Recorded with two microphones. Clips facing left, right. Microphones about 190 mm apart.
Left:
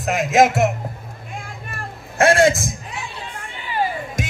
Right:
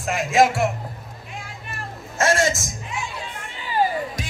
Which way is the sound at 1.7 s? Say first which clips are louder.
Right 2 dB; 60° left (ahead or behind).